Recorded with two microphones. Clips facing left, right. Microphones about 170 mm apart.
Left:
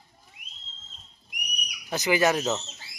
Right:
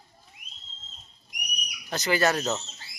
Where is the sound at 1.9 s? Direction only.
15° left (ahead or behind).